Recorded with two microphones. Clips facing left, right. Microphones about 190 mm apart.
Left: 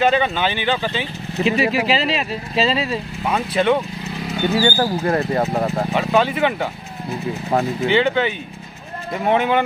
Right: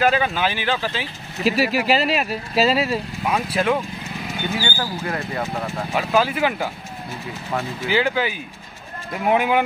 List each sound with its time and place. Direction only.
0.0 s speech: 5° right (ahead or behind)
4.6 s speech: 40° left (ahead or behind)
5.9 s speech: 5° right (ahead or behind)
7.5 s speech: 40° left (ahead or behind)
7.9 s speech: 5° right (ahead or behind)